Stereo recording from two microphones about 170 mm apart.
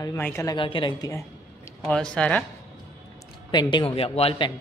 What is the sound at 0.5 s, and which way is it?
Speech, 30° left (ahead or behind).